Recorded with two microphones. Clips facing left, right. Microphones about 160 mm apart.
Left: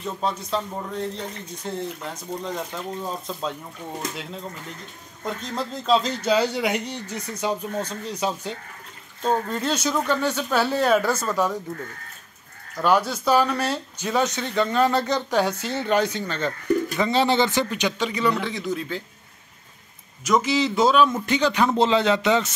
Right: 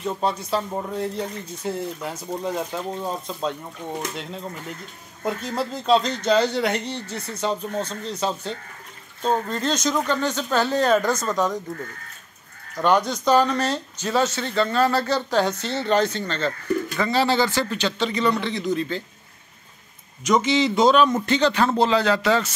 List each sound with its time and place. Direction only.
0.4 s speech: 5° right (ahead or behind)
3.8 s speech: 20° right (ahead or behind)
5.2 s speech: 5° right (ahead or behind)
12.8 s speech: 5° left (ahead or behind)
20.2 s speech: 5° left (ahead or behind); by 22.5 s 20° left (ahead or behind)